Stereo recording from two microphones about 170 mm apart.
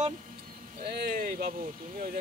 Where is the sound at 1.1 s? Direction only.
55° right (ahead or behind).